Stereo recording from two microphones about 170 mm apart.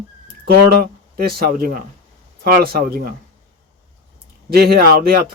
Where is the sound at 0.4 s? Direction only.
65° right (ahead or behind).